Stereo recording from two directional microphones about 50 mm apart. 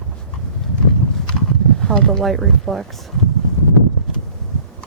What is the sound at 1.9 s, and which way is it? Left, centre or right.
Speech, centre.